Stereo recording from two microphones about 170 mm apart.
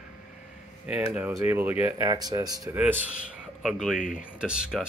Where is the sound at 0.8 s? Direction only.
10° right (ahead or behind).